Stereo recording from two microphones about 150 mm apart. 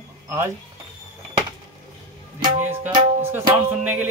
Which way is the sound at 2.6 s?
15° right (ahead or behind).